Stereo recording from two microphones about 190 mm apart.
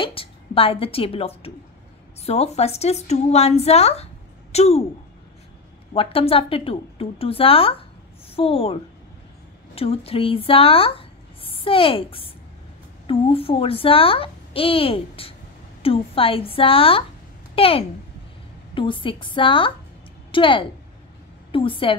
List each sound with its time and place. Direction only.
0.0 s a woman's voice: 30° left (ahead or behind)
5.9 s a woman's voice: 30° left (ahead or behind)
9.8 s a child's voice: 30° left (ahead or behind)